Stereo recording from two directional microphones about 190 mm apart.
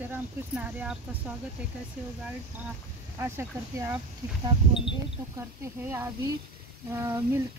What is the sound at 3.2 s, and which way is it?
Speech, 15° right (ahead or behind).